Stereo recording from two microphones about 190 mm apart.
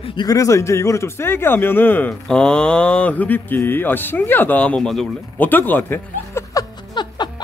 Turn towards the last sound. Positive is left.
turn(degrees=20)  # may be behind; listen again after turning